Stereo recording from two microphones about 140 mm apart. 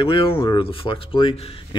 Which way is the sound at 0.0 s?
40° left (ahead or behind).